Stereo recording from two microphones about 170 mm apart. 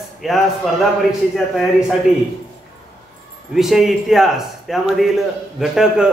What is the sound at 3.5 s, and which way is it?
A man's voice, centre (ahead or behind).